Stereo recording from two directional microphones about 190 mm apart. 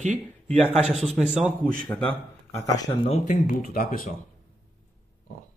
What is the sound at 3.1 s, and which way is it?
Speech, 40° left (ahead or behind).